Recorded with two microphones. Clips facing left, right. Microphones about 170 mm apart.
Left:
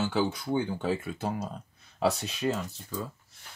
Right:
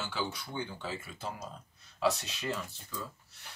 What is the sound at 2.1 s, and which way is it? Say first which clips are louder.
Speech: left 4 dB; 50° left (ahead or behind).